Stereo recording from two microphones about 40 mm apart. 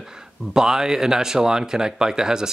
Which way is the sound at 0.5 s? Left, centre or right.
Centre.